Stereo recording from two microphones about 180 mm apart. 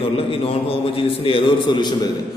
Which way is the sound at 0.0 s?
30° left (ahead or behind).